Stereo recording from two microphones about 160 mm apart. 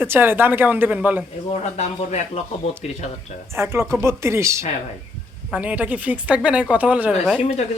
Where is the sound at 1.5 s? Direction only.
45° left (ahead or behind).